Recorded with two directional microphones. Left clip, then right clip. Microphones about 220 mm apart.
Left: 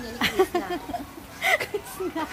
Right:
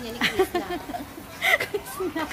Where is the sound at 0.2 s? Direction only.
30° left (ahead or behind).